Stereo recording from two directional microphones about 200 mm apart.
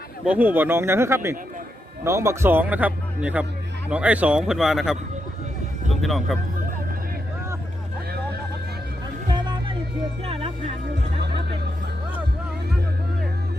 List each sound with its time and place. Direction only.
0.3 s speech: 10° right (ahead or behind)
10.2 s speech: 30° right (ahead or behind)